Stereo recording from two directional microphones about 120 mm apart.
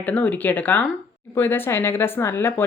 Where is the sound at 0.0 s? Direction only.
10° left (ahead or behind).